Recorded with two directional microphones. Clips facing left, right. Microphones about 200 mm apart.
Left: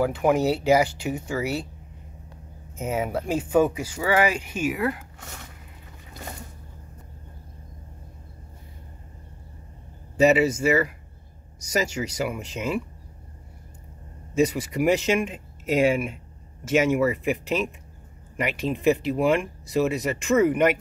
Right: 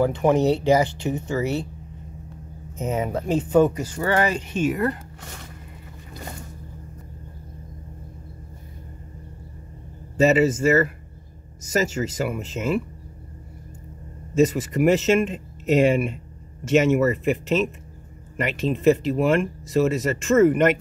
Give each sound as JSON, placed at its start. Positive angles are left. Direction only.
{"t": 0.0, "sound": "speech", "side_deg": 5}
{"t": 2.8, "sound": "speech", "side_deg": 10}
{"t": 10.6, "sound": "speech", "side_deg": 10}
{"t": 14.3, "sound": "speech", "side_deg": 10}